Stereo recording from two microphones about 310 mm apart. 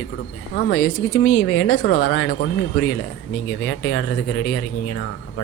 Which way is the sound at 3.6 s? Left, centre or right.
Left.